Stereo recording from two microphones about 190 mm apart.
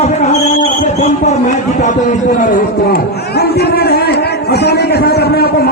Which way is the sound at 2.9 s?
55° left (ahead or behind).